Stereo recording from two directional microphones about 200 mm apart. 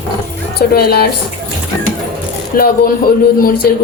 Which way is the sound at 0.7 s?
50° left (ahead or behind).